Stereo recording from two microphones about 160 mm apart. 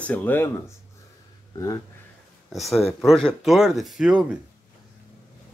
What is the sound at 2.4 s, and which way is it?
Speech, centre (ahead or behind).